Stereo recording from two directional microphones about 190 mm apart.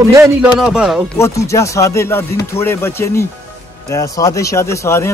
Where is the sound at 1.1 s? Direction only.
15° left (ahead or behind).